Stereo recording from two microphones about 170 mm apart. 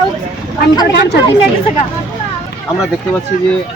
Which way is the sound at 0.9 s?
90° left.